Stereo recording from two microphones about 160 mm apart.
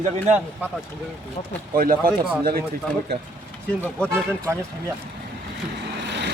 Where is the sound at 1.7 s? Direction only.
65° right (ahead or behind).